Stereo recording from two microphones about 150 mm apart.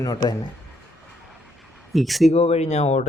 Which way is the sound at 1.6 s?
Centre (ahead or behind).